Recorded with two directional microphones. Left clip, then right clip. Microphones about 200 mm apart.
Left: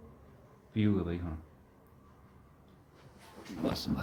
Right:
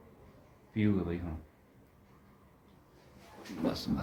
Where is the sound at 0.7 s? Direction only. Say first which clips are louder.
Even; 15° left (ahead or behind).